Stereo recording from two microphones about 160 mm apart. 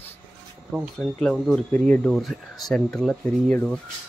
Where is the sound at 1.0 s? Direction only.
5° left (ahead or behind).